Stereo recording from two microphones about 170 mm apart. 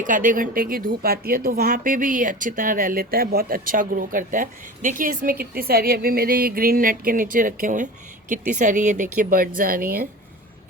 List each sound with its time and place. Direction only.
0.0 s speech: 50° right (ahead or behind)